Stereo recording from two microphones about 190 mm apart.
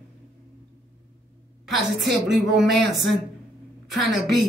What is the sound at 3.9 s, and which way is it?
Speech, centre (ahead or behind).